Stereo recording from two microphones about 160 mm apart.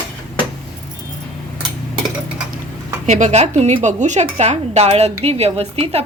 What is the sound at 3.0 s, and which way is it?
A woman's voice, 45° right (ahead or behind).